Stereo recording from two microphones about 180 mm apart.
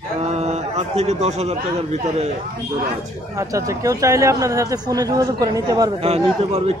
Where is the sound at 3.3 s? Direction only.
15° right (ahead or behind).